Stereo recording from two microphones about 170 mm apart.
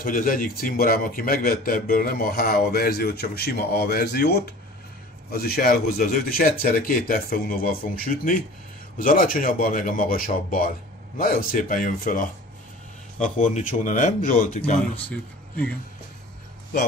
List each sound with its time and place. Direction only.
0.0 s a man's voice: 55° left (ahead or behind)
15.0 s speech: 5° left (ahead or behind)